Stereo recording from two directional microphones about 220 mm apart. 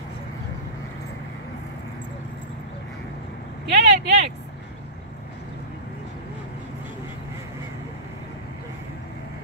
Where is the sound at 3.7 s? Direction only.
50° right (ahead or behind).